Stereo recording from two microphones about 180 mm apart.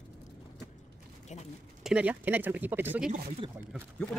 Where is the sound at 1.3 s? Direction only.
40° left (ahead or behind).